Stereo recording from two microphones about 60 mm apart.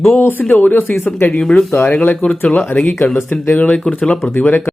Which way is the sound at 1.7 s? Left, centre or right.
Left.